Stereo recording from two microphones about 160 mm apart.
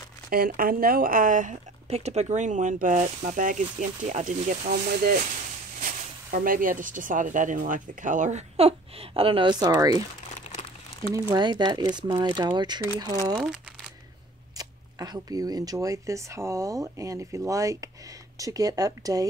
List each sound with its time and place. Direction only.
0.3 s speech: 65° right (ahead or behind); by 4.4 s 50° right (ahead or behind)
4.5 s speech: 65° right (ahead or behind); by 10.0 s 20° right (ahead or behind)
11.3 s speech: 25° right (ahead or behind)
14.6 s speech: 25° right (ahead or behind)